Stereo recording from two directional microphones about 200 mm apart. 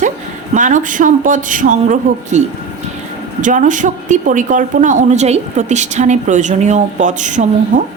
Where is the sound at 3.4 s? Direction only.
40° right (ahead or behind).